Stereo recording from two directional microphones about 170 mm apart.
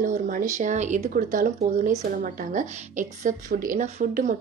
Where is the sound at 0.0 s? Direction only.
50° right (ahead or behind).